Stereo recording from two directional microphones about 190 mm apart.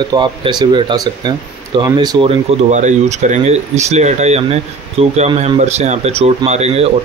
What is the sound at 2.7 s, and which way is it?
Speech, 40° right (ahead or behind).